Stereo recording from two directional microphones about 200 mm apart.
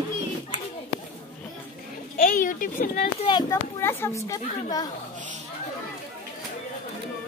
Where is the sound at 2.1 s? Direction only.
45° left (ahead or behind).